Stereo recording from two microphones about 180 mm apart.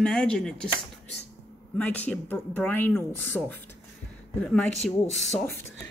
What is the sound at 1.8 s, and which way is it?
Speech, 10° left (ahead or behind).